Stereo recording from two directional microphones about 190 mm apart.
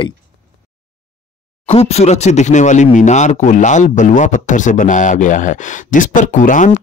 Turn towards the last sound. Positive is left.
turn(degrees=40)  # may be behind; listen again after turning